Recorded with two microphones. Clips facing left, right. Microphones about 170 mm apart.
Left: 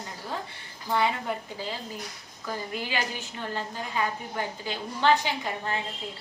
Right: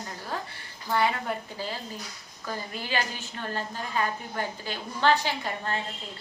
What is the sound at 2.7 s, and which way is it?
A woman's voice, 15° left (ahead or behind).